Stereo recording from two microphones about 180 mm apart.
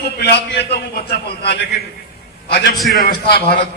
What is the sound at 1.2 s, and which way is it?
Speech, 65° left (ahead or behind).